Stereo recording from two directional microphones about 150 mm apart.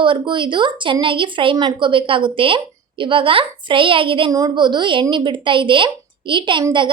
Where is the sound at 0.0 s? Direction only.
35° right (ahead or behind).